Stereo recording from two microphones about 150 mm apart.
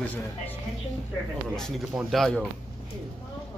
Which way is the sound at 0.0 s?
10° left (ahead or behind).